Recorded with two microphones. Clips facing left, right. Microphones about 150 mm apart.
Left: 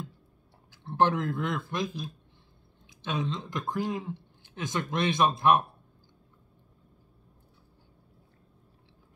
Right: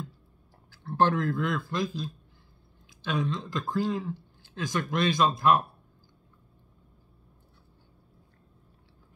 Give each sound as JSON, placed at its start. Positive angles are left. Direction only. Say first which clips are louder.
{"t": 0.7, "sound": "speech", "louder": "even", "side_deg": 20}